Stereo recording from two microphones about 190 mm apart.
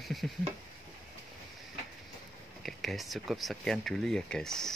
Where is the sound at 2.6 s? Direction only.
Centre (ahead or behind).